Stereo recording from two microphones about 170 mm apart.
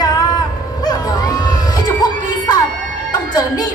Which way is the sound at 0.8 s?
25° left (ahead or behind).